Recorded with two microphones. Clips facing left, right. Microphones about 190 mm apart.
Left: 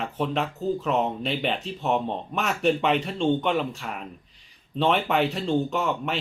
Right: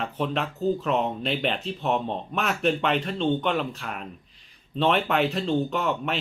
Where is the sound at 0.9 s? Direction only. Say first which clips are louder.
Even; centre (ahead or behind).